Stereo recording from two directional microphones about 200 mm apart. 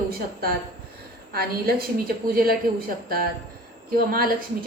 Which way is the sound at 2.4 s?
50° right (ahead or behind).